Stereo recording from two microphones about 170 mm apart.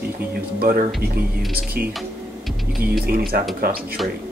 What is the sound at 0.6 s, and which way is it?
Speech, 60° right (ahead or behind).